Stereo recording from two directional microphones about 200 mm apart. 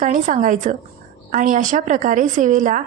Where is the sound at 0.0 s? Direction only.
40° right (ahead or behind).